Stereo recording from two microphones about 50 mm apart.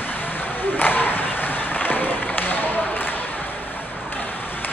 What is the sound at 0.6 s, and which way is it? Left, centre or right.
Run, left.